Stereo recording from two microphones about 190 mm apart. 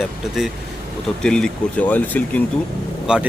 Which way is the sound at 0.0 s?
Centre (ahead or behind).